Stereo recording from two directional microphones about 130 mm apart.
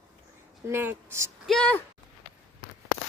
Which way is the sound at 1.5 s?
5° left (ahead or behind).